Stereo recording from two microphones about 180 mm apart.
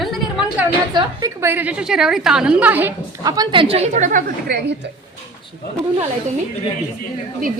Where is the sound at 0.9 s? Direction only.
15° right (ahead or behind).